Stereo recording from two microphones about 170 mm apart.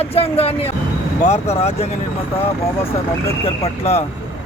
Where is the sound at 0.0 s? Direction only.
35° left (ahead or behind).